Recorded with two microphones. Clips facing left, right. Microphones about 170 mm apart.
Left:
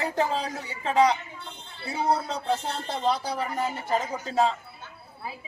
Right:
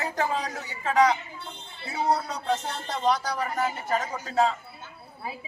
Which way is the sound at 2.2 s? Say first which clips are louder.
Left 1 dB; 30° left (ahead or behind).